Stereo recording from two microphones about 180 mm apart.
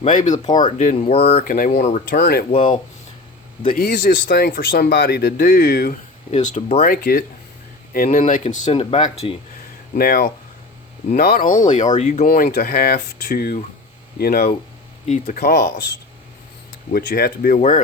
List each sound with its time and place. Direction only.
0.0 s speech: 45° left (ahead or behind)
1.5 s speech: 50° left (ahead or behind)
3.7 s a man's voice: 55° left (ahead or behind)
6.3 s speech: 40° left (ahead or behind)
6.8 s a man's voice: 55° left (ahead or behind); by 9.3 s 40° left (ahead or behind)
9.9 s a man's voice: 55° left (ahead or behind)
15.0 s speech: 45° left (ahead or behind)
16.9 s speech: 55° left (ahead or behind)